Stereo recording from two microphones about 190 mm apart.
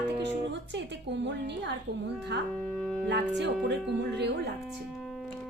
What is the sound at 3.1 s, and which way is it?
Speech, 65° right (ahead or behind).